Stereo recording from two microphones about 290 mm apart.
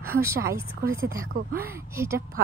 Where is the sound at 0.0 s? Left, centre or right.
Centre.